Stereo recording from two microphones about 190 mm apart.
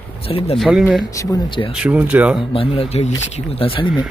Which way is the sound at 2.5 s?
30° left (ahead or behind).